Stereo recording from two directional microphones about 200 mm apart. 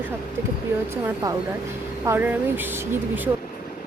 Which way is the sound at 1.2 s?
15° right (ahead or behind).